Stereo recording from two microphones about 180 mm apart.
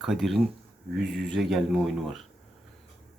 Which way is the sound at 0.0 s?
Centre (ahead or behind).